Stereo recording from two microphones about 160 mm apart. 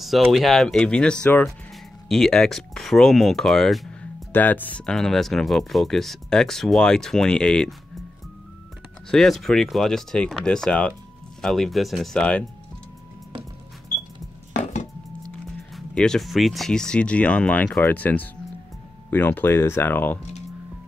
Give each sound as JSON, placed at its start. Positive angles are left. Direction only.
{"t": 0.0, "sound": "speech", "side_deg": 0}
{"t": 9.1, "sound": "speech", "side_deg": 0}
{"t": 14.6, "sound": "chopping", "side_deg": 50}
{"t": 15.7, "sound": "speech", "side_deg": 5}